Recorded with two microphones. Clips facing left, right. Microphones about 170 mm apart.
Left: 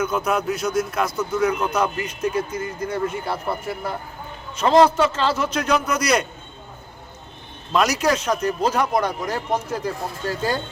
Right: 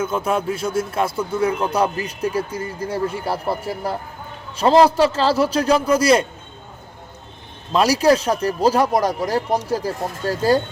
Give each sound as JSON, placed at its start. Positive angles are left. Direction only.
{"t": 0.0, "sound": "speech", "side_deg": -25}
{"t": 7.7, "sound": "speech", "side_deg": -30}